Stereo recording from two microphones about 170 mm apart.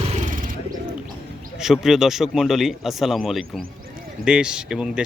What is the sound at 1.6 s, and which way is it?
A man's voice, 5° right (ahead or behind).